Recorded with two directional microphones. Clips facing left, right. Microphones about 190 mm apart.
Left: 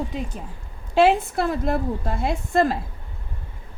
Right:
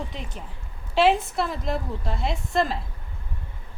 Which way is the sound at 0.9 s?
50° left (ahead or behind).